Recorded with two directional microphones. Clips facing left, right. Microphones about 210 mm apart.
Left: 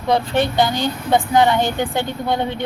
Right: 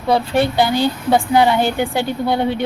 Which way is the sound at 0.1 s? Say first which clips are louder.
Right 2 dB; 10° right (ahead or behind).